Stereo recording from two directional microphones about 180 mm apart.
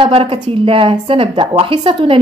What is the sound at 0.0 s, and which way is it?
A woman's voice, 30° right (ahead or behind).